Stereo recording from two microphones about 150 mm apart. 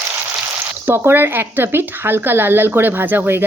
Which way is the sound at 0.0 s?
15° right (ahead or behind).